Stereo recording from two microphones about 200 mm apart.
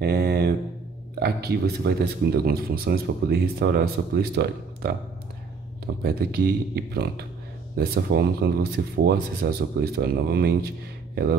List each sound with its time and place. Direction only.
0.0 s mantra: 55° right (ahead or behind)
1.2 s speech: 55° right (ahead or behind)
6.0 s speech: 50° right (ahead or behind)